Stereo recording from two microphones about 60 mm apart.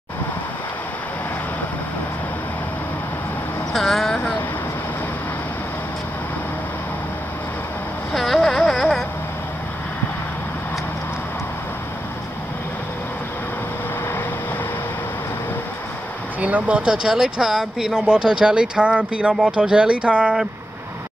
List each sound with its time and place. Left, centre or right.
3.7 s vehicle: centre
8.1 s a sound: centre
16.3 s speech: right